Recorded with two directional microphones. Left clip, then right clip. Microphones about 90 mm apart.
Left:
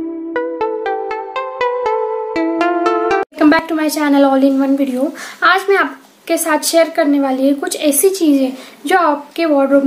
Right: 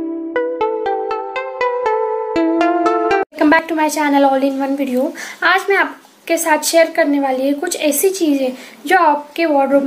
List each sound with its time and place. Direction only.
0.3 s music: centre (ahead or behind)
3.3 s a woman's voice: 30° left (ahead or behind)